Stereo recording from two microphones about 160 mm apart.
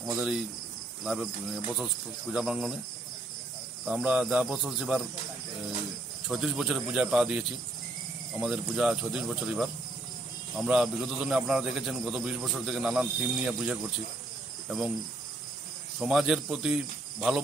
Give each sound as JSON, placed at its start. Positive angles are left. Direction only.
{"t": 0.0, "sound": "a man's voice", "side_deg": -5}
{"t": 3.8, "sound": "speech", "side_deg": -10}
{"t": 6.2, "sound": "a man's voice", "side_deg": 0}
{"t": 16.0, "sound": "a man's voice", "side_deg": -5}